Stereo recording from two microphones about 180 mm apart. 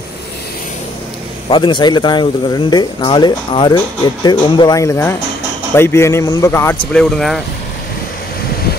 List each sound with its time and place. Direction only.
1.5 s speech: 25° left (ahead or behind); by 7.4 s centre (ahead or behind)